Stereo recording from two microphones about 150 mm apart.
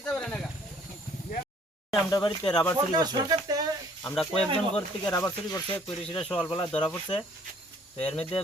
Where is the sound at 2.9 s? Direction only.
25° right (ahead or behind).